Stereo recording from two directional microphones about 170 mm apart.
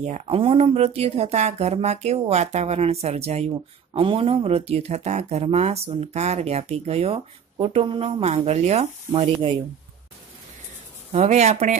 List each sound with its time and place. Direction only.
0.0 s speech: 45° right (ahead or behind)
0.3 s speech: 30° right (ahead or behind)
11.1 s speech: 40° right (ahead or behind)